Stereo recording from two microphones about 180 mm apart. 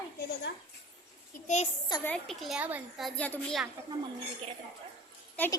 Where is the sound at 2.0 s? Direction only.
5° left (ahead or behind).